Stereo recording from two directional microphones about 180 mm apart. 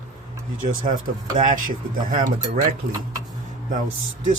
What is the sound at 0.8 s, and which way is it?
Speech, 50° right (ahead or behind).